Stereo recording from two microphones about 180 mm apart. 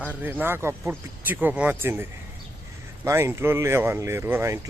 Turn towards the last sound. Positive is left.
turn(degrees=-15)  # may be behind; listen again after turning